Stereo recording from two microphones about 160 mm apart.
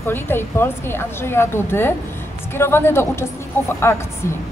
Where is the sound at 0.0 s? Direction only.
15° left (ahead or behind).